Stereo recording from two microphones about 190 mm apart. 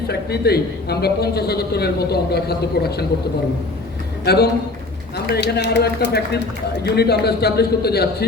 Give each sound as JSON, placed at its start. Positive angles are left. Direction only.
{"t": 0.1, "sound": "a man's voice", "side_deg": 55}
{"t": 4.3, "sound": "a man's voice", "side_deg": 55}